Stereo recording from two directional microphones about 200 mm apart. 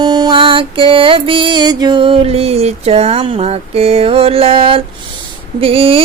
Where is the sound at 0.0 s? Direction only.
20° right (ahead or behind).